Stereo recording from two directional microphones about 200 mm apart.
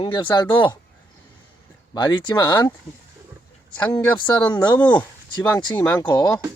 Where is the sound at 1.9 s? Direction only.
20° left (ahead or behind).